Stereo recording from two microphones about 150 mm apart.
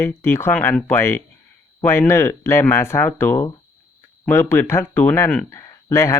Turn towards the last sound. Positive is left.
turn(degrees=20)  # may be behind; listen again after turning